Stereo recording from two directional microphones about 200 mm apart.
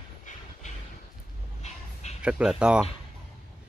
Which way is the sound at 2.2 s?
5° right (ahead or behind).